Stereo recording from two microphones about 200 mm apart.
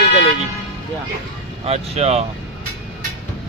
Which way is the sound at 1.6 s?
30° right (ahead or behind).